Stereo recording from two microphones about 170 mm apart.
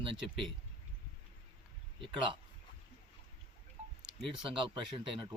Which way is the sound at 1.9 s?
30° right (ahead or behind).